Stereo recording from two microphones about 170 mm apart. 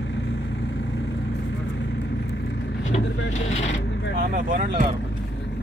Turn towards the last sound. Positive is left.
turn(degrees=-50)  # may be behind; listen again after turning